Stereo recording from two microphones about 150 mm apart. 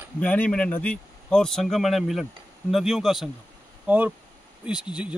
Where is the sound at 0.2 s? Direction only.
10° left (ahead or behind).